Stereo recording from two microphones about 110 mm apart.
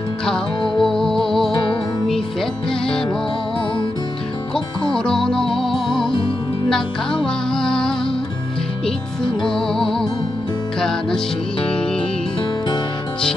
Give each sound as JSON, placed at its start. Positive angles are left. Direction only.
{"t": 0.7, "sound": "music", "side_deg": 5}
{"t": 1.5, "sound": "music", "side_deg": 45}
{"t": 4.9, "sound": "music", "side_deg": 5}
{"t": 7.2, "sound": "music", "side_deg": 5}
{"t": 9.5, "sound": "music", "side_deg": 5}